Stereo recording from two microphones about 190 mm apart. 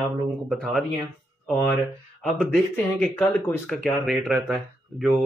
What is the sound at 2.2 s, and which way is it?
Speech, 5° left (ahead or behind).